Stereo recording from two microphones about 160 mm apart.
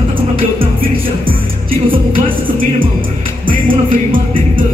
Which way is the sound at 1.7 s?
35° right (ahead or behind).